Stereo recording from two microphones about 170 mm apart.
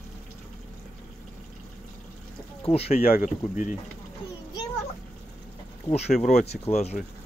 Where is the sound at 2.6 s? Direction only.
35° left (ahead or behind).